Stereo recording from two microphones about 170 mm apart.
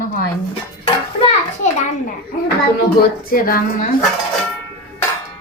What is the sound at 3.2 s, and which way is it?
Speech, 60° left (ahead or behind).